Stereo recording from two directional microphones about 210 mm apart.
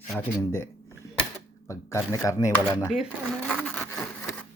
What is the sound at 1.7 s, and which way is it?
Speech, 15° left (ahead or behind).